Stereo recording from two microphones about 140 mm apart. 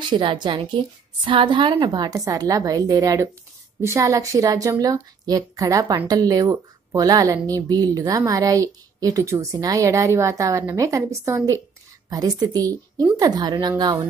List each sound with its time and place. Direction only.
0.1 s a woman's voice: 35° right (ahead or behind)